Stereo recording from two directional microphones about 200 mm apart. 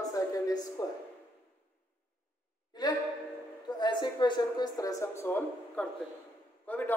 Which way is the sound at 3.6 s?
20° left (ahead or behind).